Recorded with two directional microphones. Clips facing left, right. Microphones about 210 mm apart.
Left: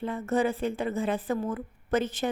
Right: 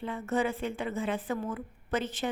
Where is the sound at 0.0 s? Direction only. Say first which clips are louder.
Left 3 dB; 40° left (ahead or behind).